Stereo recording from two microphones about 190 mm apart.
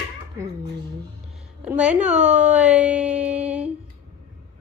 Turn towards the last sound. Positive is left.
turn(degrees=-5)  # may be behind; listen again after turning